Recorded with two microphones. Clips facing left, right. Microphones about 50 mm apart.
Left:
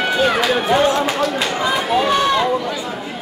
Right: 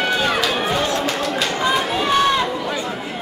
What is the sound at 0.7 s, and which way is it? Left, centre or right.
Speech, left.